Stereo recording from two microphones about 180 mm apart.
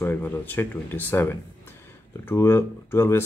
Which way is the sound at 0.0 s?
10° left (ahead or behind).